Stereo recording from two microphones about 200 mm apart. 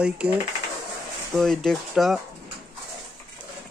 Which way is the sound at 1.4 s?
Centre (ahead or behind).